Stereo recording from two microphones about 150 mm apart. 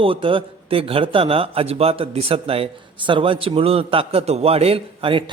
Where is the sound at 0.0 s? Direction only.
35° right (ahead or behind).